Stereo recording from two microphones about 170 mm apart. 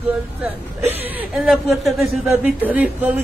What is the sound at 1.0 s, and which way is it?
A man's voice, 5° right (ahead or behind).